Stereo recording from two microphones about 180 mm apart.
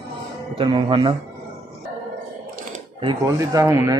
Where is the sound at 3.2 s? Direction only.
20° right (ahead or behind).